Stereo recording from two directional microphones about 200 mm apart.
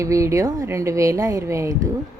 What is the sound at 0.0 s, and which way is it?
Speech, 15° right (ahead or behind).